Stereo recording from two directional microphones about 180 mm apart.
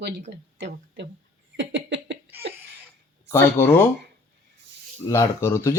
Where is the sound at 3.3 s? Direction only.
15° left (ahead or behind).